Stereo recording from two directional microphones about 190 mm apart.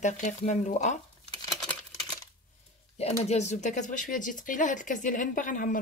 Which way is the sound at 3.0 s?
35° left (ahead or behind).